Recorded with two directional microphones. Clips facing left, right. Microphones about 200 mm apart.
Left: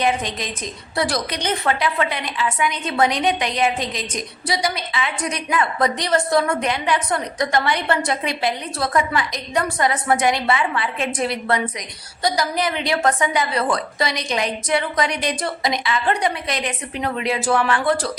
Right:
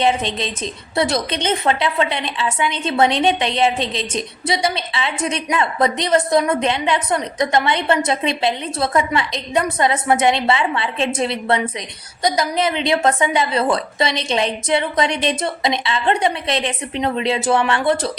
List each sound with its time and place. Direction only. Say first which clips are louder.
0.0 s a woman's voice: right 3 dB; 25° right (ahead or behind)